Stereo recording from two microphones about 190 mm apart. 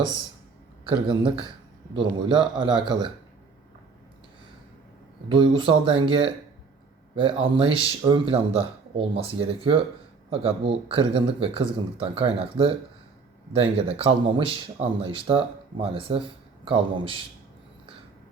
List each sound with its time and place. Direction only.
0.9 s speech: 25° right (ahead or behind)
5.3 s speech: 25° right (ahead or behind)